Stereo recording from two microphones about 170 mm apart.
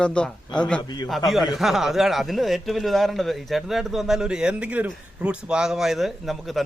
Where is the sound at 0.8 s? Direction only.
25° left (ahead or behind).